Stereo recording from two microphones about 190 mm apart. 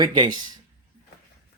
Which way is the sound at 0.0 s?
25° right (ahead or behind).